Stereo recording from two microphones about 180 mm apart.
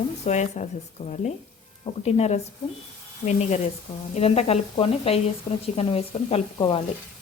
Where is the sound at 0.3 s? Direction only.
40° left (ahead or behind).